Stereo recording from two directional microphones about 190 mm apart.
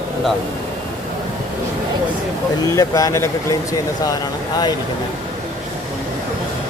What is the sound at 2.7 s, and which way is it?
Speech, 20° left (ahead or behind).